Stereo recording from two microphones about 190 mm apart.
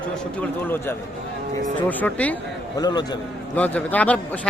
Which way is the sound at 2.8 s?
20° left (ahead or behind).